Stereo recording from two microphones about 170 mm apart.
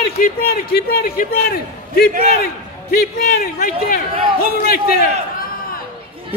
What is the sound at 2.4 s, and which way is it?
A man's voice, 60° left (ahead or behind).